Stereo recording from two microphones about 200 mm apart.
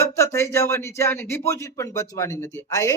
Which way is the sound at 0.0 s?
15° left (ahead or behind).